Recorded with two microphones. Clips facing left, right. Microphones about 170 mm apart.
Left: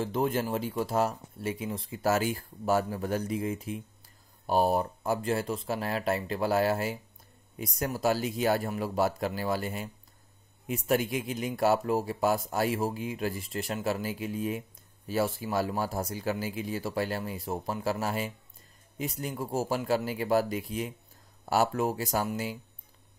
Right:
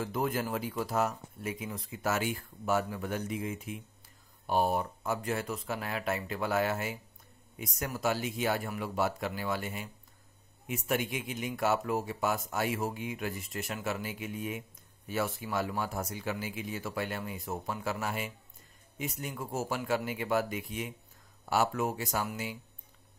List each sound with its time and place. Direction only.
0.0 s speech: 30° left (ahead or behind)